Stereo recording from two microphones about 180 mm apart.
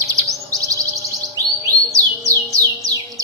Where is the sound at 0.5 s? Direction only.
20° right (ahead or behind).